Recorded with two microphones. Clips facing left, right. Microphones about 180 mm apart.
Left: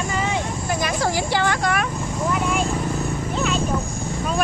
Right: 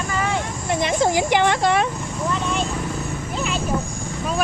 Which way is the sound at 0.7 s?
20° right (ahead or behind).